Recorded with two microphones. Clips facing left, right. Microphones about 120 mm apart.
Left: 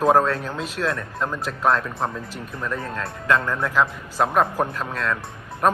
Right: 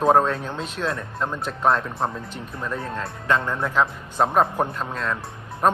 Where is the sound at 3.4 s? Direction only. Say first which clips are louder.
Left 1 dB; 25° right (ahead or behind).